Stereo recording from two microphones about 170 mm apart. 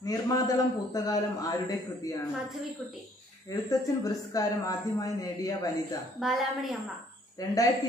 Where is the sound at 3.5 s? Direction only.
20° left (ahead or behind).